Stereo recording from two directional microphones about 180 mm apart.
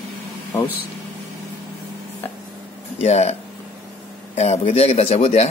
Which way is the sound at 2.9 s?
35° left (ahead or behind).